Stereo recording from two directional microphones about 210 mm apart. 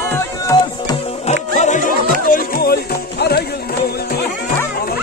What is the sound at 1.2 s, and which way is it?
Music, 35° left (ahead or behind).